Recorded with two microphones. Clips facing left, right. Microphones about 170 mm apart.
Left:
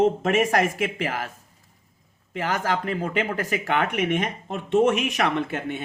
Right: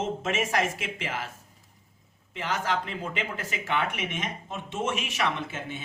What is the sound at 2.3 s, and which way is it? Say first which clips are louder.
Speech: left 4 dB; 55° left (ahead or behind).